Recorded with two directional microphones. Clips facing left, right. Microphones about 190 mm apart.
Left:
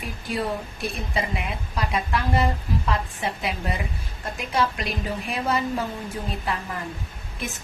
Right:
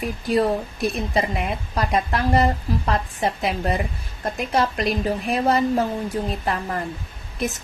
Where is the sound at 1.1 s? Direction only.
45° right (ahead or behind).